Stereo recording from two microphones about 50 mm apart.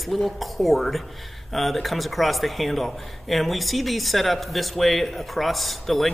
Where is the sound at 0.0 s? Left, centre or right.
Centre.